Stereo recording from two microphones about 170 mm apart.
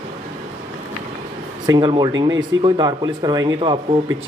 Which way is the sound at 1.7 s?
25° right (ahead or behind).